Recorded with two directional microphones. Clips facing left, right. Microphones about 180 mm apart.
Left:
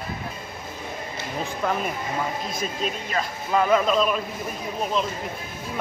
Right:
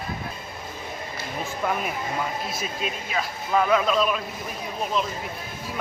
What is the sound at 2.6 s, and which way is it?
A man's voice, 5° right (ahead or behind).